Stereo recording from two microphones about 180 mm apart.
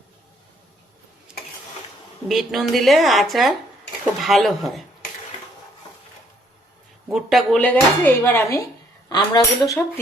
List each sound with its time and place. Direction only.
2.2 s speech: centre (ahead or behind)
7.1 s speech: centre (ahead or behind); by 9.8 s 15° left (ahead or behind)